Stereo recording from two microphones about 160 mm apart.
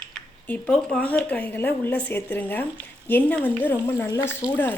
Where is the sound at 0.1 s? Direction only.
10° left (ahead or behind).